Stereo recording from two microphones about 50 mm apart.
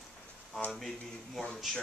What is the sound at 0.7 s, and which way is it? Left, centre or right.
Speech, centre.